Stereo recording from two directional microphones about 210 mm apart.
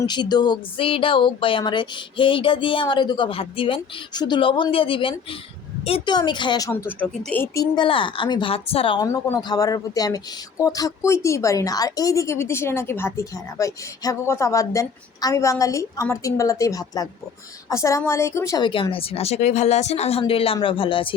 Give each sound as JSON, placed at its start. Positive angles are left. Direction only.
{"t": 0.0, "sound": "speech", "side_deg": 20}